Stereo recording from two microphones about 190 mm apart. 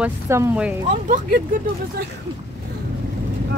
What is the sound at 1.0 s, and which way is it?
Speech, 45° right (ahead or behind).